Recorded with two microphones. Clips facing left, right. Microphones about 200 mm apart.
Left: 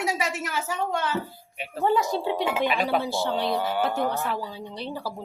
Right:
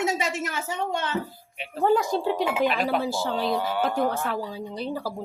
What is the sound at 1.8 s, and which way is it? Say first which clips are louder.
Speech: right 2 dB; 45° right (ahead or behind).